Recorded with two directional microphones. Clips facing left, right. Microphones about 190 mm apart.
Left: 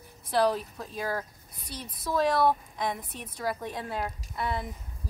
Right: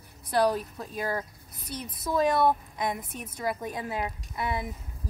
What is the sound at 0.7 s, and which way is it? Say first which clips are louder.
Speech: right 1 dB; centre (ahead or behind).